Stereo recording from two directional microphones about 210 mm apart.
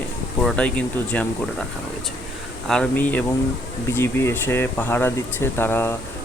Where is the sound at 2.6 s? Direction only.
5° left (ahead or behind).